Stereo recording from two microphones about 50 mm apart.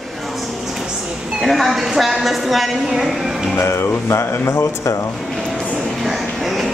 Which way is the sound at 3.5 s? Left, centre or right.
Left.